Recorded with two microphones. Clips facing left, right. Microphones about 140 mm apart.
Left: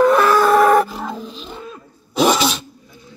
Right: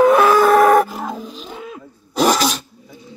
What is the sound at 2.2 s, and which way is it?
Sneeze, centre (ahead or behind).